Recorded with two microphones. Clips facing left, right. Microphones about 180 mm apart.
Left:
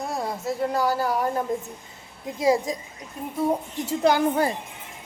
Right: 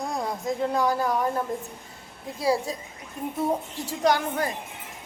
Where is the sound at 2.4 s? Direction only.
20° left (ahead or behind).